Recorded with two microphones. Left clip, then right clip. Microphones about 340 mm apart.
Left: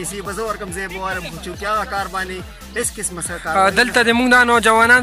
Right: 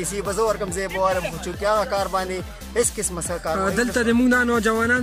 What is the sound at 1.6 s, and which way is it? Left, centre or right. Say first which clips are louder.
Speech: even; centre.